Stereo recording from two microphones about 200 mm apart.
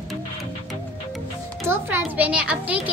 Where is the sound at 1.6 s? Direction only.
10° right (ahead or behind).